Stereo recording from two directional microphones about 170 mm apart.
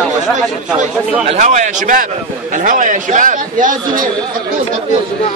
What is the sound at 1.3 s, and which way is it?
A man's voice, 45° right (ahead or behind).